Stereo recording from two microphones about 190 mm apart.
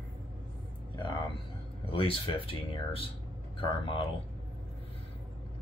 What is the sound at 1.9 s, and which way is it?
Speech, 30° left (ahead or behind).